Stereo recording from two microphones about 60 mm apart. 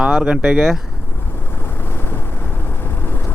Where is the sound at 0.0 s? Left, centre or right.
Centre.